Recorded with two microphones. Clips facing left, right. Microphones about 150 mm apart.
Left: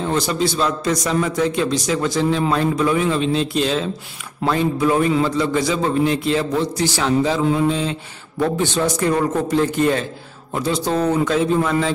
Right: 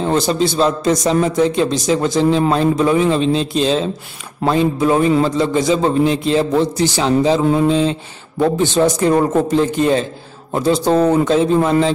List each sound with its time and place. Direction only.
0.0 s a man's voice: 30° right (ahead or behind)
10.5 s a man's voice: 35° right (ahead or behind)